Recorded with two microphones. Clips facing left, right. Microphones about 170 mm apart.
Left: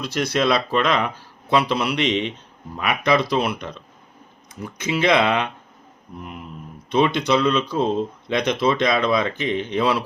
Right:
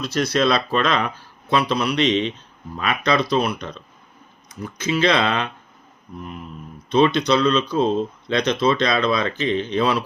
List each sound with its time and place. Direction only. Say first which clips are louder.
0.0 s speech: right 1 dB; 15° left (ahead or behind)
4.9 s speech: left 1 dB; 15° left (ahead or behind)
6.9 s speech: right 2 dB; 10° left (ahead or behind)